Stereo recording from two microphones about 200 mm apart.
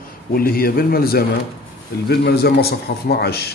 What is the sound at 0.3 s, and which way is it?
Speech, 45° left (ahead or behind).